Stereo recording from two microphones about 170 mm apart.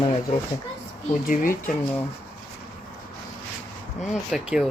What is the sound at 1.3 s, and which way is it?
Speech, 55° left (ahead or behind).